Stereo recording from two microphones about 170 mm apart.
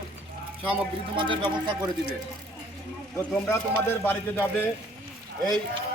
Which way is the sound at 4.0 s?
10° left (ahead or behind).